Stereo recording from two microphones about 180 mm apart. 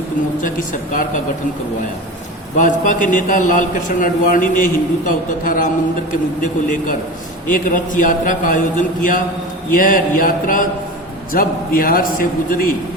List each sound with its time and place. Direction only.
0.4 s a man's voice: 45° left (ahead or behind)
2.6 s a man's voice: 45° left (ahead or behind)